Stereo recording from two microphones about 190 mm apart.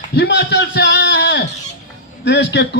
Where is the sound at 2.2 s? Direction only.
65° left (ahead or behind).